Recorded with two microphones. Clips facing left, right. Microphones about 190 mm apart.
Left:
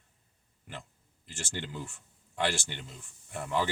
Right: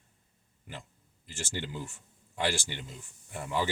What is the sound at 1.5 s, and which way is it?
Speech, 10° right (ahead or behind).